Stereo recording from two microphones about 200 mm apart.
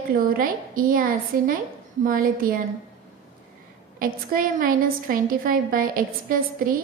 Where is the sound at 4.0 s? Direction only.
45° right (ahead or behind).